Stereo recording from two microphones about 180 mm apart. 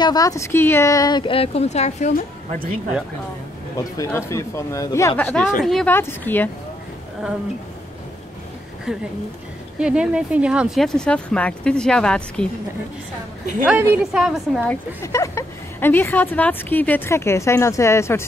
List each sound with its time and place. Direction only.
0.0 s speech: 20° left (ahead or behind); by 2.1 s 40° left (ahead or behind)
4.3 s a woman's voice: 15° left (ahead or behind)
8.9 s speech: 5° right (ahead or behind)
13.7 s a woman's voice: 5° right (ahead or behind); by 18.2 s 15° left (ahead or behind)